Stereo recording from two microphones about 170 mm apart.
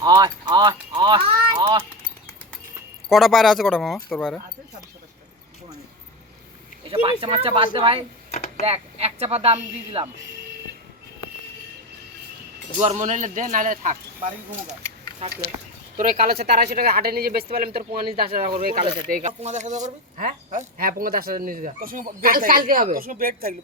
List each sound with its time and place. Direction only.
0.0 s a sound: 25° right (ahead or behind)
3.1 s speech: centre (ahead or behind)
6.9 s speech: 30° right (ahead or behind)
8.3 s a sound: 40° left (ahead or behind)
8.6 s speech: 35° right (ahead or behind)
12.8 s speech: 40° right (ahead or behind)
16.0 s speech: 55° right (ahead or behind)
16.5 s speech: 65° right (ahead or behind)
19.0 s speech: 50° right (ahead or behind)